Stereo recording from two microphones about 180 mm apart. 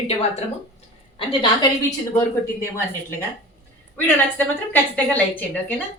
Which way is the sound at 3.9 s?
10° left (ahead or behind).